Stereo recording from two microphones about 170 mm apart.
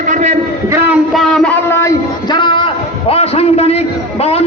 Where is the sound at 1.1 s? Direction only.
5° left (ahead or behind).